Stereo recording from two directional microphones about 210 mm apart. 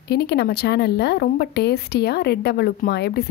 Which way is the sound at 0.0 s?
50° left (ahead or behind).